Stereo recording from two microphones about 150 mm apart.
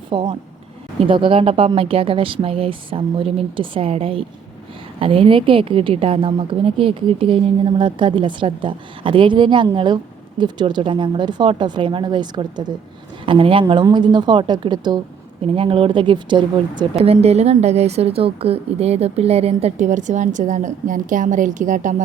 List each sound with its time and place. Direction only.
0.1 s a woman's voice: 35° right (ahead or behind)
17.0 s a woman's voice: 45° right (ahead or behind); by 22.0 s 60° right (ahead or behind)